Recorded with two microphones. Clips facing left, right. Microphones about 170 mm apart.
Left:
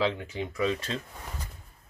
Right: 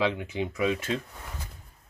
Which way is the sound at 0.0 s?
15° right (ahead or behind).